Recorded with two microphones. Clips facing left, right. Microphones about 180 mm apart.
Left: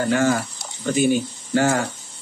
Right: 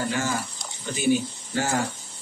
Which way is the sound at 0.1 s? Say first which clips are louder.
Left 8 dB; 60° left (ahead or behind).